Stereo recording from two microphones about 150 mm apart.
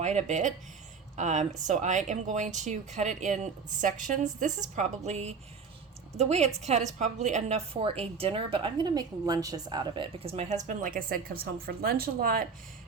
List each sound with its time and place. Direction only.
0.0 s a woman's voice: 50° right (ahead or behind); by 12.5 s 75° right (ahead or behind)